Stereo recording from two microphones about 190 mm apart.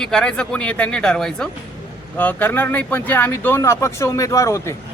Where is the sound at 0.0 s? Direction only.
5° left (ahead or behind).